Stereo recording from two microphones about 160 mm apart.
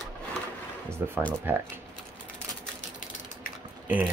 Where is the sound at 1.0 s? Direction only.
15° right (ahead or behind).